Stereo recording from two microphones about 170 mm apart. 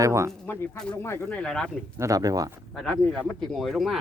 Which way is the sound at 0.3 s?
10° left (ahead or behind).